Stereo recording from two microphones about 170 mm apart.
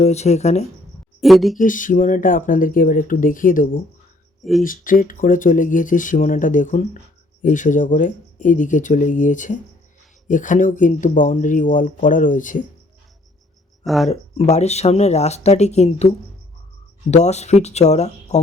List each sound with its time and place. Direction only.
0.0 s speech: 40° left (ahead or behind)
1.2 s speech: centre (ahead or behind)
1.5 s speech: 50° left (ahead or behind)
13.8 s speech: centre (ahead or behind)
14.1 s speech: 40° left (ahead or behind)